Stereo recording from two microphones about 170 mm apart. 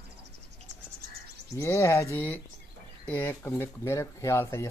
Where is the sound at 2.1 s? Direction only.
10° left (ahead or behind).